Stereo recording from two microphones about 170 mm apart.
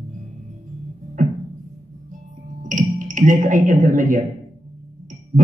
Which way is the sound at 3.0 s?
50° right (ahead or behind).